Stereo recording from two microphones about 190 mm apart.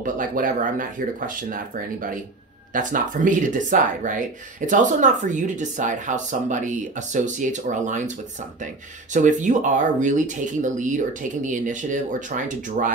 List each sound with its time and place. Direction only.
0.0 s speech: 45° right (ahead or behind)
9.1 s speech: 40° right (ahead or behind)